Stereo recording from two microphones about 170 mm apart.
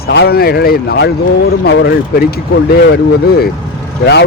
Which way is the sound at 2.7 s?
70° left (ahead or behind).